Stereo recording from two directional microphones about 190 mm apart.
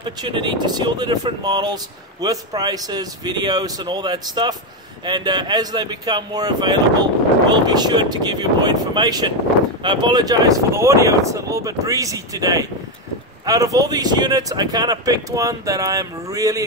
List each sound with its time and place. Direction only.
0.0 s speech: 25° right (ahead or behind)